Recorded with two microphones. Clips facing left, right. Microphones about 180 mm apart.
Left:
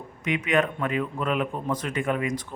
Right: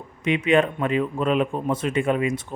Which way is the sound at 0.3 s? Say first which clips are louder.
Right 5 dB; 25° right (ahead or behind).